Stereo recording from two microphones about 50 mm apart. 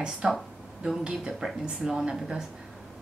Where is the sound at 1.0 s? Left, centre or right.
Centre.